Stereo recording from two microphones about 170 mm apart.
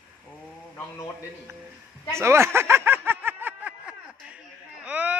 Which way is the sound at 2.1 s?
15° right (ahead or behind).